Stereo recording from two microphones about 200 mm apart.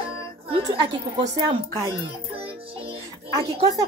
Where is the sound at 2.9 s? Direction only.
20° right (ahead or behind).